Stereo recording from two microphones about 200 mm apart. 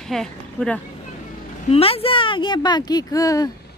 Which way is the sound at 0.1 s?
5° left (ahead or behind).